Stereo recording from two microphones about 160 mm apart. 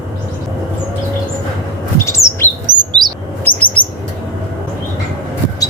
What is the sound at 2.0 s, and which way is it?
Bird, 20° left (ahead or behind).